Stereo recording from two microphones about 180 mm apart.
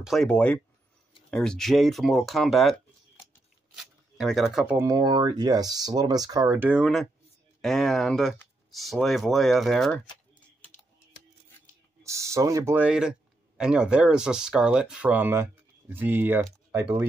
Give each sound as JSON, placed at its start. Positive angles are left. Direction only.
{"t": 0.0, "sound": "speech", "side_deg": 0}
{"t": 3.7, "sound": "speech", "side_deg": 0}
{"t": 4.7, "sound": "speech", "side_deg": -20}
{"t": 12.0, "sound": "speech", "side_deg": -15}